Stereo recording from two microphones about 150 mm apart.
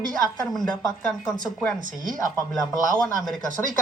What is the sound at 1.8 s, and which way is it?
Speech, 65° right (ahead or behind).